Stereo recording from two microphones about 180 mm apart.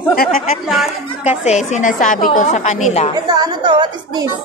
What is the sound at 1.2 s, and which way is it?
A woman's voice, 40° left (ahead or behind).